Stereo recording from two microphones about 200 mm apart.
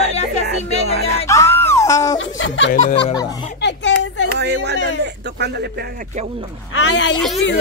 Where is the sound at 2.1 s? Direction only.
70° left (ahead or behind).